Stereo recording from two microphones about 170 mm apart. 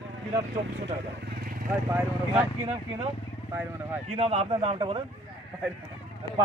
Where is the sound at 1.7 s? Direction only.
15° right (ahead or behind).